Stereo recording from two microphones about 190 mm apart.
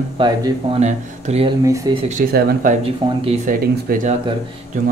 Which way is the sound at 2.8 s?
30° right (ahead or behind).